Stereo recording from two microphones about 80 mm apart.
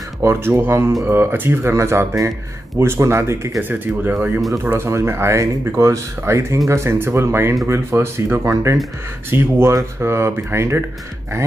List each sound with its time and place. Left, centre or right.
0.2 s speech: right
3.6 s speech: right
4.6 s speech: right